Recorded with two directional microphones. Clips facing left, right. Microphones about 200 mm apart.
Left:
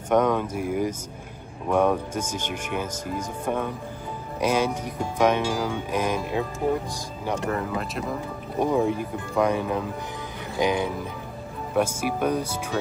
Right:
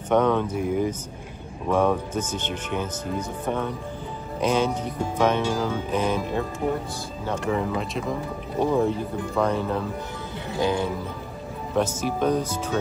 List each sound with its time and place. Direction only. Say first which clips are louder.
0.1 s speech: right 1 dB; 10° left (ahead or behind)
7.4 s speech: right 2 dB; centre (ahead or behind)
8.8 s speech: right 1 dB; 15° left (ahead or behind)